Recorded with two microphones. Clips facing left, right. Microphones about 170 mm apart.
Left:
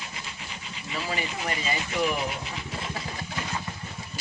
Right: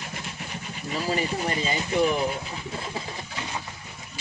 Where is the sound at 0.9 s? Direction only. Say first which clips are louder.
Right 5 dB; 35° right (ahead or behind).